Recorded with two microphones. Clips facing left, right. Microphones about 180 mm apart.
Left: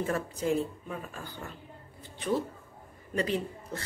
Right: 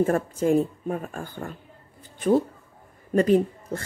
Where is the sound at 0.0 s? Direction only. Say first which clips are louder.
Right 9 dB; 50° right (ahead or behind).